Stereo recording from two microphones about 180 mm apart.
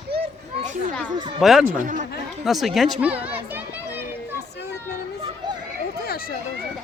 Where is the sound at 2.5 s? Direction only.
Centre (ahead or behind).